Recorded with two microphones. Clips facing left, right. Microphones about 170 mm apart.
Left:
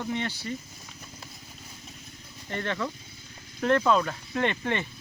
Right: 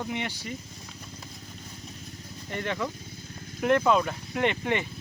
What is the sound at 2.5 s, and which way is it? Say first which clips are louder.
Speech: even; 15° right (ahead or behind).